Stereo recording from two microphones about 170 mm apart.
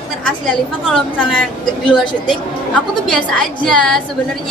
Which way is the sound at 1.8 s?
30° left (ahead or behind).